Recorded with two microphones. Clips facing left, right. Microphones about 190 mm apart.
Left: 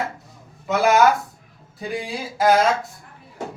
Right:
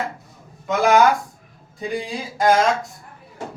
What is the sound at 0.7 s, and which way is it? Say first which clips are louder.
Speech: right 1 dB; 5° left (ahead or behind).